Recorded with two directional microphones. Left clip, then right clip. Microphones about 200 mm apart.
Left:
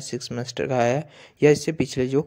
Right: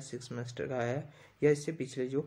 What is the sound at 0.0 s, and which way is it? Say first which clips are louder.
Speech: left 12 dB; 40° left (ahead or behind).